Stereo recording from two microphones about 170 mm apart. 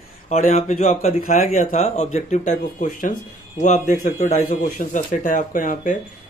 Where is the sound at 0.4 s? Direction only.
50° left (ahead or behind).